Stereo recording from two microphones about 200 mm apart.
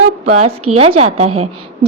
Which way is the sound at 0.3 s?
30° right (ahead or behind).